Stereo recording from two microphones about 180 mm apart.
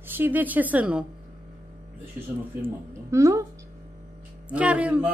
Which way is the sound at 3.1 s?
15° right (ahead or behind).